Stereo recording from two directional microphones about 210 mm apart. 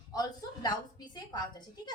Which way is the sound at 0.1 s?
20° left (ahead or behind).